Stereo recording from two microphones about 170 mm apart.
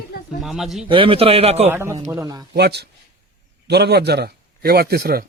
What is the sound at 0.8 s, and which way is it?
Speech, 30° right (ahead or behind).